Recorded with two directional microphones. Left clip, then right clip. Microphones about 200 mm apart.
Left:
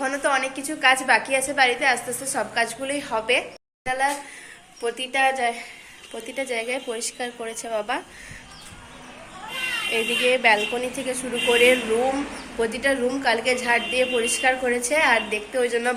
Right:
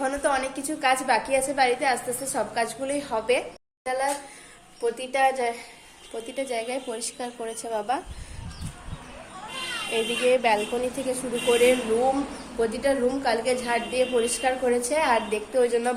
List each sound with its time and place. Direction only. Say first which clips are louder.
0.0 s a woman's voice: left 2 dB; centre (ahead or behind)
9.9 s a woman's voice: left 1 dB; 5° right (ahead or behind)